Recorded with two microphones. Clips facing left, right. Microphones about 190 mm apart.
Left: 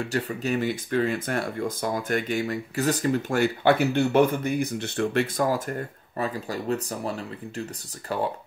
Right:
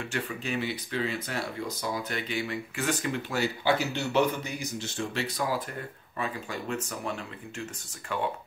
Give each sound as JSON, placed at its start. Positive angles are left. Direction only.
{"t": 0.1, "sound": "speech", "side_deg": 40}